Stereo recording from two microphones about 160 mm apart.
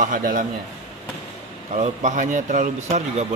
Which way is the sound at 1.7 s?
50° right (ahead or behind).